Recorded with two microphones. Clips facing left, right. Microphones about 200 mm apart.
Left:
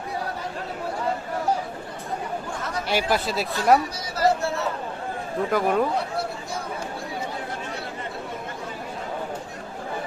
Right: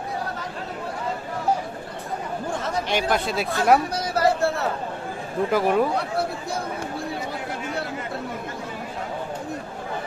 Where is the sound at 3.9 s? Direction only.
60° right (ahead or behind).